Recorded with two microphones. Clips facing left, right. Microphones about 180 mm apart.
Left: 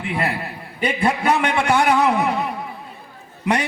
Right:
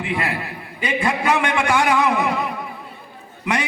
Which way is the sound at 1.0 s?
30° left (ahead or behind).